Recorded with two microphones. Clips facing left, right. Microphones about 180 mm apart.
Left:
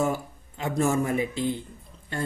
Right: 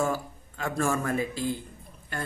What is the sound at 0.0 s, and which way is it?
Speech, 20° left (ahead or behind).